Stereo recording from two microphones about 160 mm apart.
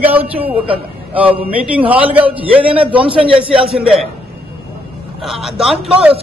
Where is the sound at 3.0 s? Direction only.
35° right (ahead or behind).